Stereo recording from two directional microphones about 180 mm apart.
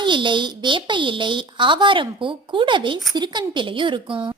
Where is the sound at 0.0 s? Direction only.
25° right (ahead or behind).